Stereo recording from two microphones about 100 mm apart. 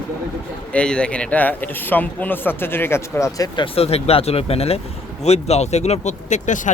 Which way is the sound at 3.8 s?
85° left.